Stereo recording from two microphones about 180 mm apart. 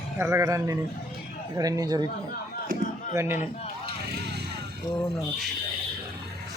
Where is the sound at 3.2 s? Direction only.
15° right (ahead or behind).